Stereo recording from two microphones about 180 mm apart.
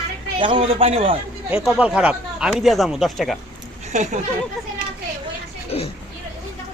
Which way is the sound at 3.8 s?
40° right (ahead or behind).